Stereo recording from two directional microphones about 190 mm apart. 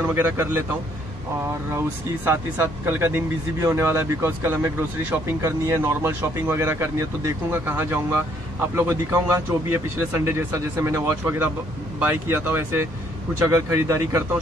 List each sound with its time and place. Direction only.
0.1 s speech: 10° right (ahead or behind)
1.7 s speech: 15° right (ahead or behind)